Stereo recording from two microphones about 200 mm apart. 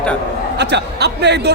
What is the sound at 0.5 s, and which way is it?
Speech, 55° right (ahead or behind).